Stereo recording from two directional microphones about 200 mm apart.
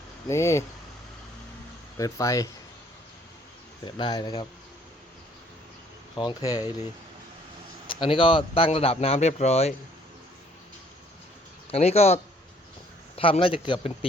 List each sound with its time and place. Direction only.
0.3 s speech: 15° left (ahead or behind)
2.0 s speech: 15° left (ahead or behind)
3.8 s speech: 20° left (ahead or behind)
6.1 s speech: 20° left (ahead or behind)
7.9 s speech: 25° left (ahead or behind)
11.7 s speech: 30° left (ahead or behind)